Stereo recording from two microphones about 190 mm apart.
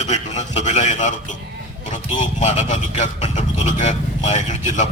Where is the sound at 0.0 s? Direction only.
35° left (ahead or behind).